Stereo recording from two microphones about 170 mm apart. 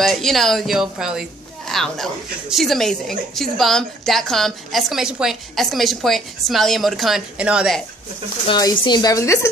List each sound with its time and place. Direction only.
0.0 s a woman's voice: centre (ahead or behind)
8.5 s speech: 25° left (ahead or behind)